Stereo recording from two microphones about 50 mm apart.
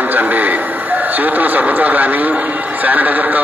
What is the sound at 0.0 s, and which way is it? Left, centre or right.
A man's voice, right.